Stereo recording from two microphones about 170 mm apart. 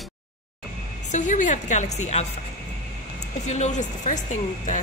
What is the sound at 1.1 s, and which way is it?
A woman's voice, 45° left (ahead or behind).